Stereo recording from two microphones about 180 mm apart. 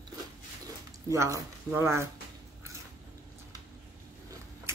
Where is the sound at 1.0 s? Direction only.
15° right (ahead or behind).